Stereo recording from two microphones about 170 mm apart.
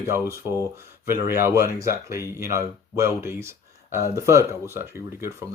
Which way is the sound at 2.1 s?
15° right (ahead or behind).